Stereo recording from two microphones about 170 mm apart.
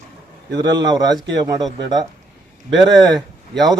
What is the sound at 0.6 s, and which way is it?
A man's voice, 20° right (ahead or behind).